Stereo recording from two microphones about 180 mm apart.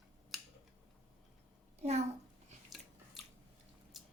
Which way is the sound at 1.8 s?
40° right (ahead or behind).